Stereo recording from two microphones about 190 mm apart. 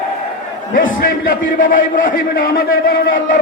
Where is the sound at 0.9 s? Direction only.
50° left (ahead or behind).